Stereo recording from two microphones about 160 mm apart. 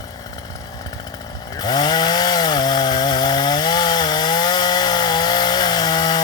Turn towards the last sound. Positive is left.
turn(degrees=25)  # may be behind; listen again after turning